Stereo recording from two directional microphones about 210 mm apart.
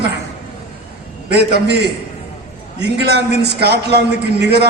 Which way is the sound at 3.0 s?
50° right (ahead or behind).